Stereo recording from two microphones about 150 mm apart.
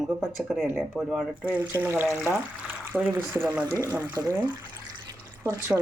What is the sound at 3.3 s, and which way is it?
Speech, 15° right (ahead or behind).